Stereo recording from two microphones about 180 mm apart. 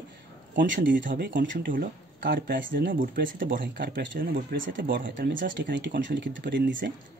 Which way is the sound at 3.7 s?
75° right (ahead or behind).